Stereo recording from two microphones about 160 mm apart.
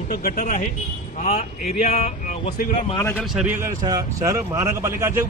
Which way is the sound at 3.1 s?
5° right (ahead or behind).